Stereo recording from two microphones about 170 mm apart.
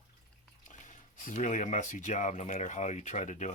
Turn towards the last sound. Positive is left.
turn(degrees=45)  # may be behind; listen again after turning